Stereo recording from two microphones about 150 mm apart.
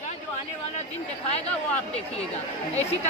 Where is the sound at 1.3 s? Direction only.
45° left (ahead or behind).